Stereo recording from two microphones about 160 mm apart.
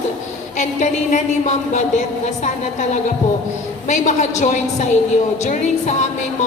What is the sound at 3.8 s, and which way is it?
Speech, 50° left (ahead or behind).